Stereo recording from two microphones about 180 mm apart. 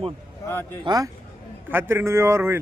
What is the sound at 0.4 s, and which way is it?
Speech, 15° left (ahead or behind).